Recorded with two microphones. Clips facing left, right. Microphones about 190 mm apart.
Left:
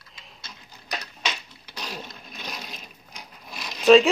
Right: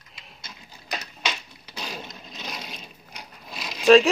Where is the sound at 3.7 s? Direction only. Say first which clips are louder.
Even; centre (ahead or behind).